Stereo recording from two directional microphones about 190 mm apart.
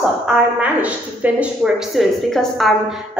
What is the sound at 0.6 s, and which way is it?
A woman's voice, 5° right (ahead or behind).